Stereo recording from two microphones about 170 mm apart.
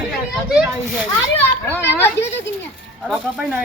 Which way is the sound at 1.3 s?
10° left (ahead or behind).